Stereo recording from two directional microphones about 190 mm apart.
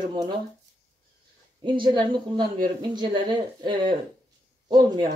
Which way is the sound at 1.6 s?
25° right (ahead or behind).